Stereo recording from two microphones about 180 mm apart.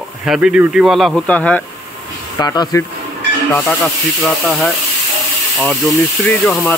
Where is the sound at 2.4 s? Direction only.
20° left (ahead or behind).